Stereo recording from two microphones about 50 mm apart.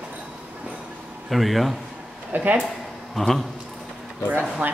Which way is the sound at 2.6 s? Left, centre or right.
Centre.